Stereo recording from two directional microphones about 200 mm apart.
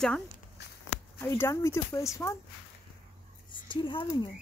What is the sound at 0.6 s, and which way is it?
Walk, 60° left (ahead or behind).